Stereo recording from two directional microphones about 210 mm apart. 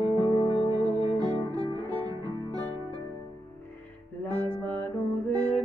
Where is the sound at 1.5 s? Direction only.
20° right (ahead or behind).